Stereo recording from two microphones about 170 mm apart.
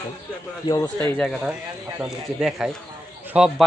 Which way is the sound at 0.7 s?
20° left (ahead or behind).